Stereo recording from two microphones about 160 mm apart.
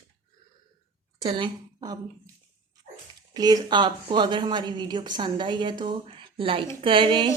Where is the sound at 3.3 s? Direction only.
25° right (ahead or behind).